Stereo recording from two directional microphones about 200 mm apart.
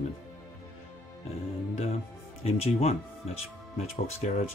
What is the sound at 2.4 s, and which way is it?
Speech, 30° left (ahead or behind).